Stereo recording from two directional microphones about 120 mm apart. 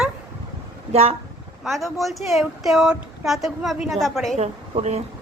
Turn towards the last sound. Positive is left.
turn(degrees=-60)  # may be behind; listen again after turning